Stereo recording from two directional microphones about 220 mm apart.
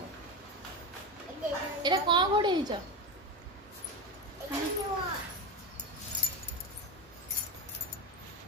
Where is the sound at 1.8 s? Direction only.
20° right (ahead or behind).